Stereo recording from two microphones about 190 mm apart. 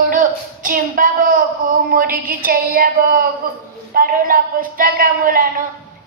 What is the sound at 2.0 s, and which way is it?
Child singing, 50° right (ahead or behind).